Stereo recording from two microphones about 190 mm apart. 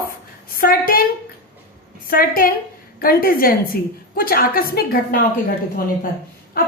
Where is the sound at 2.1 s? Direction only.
50° left (ahead or behind).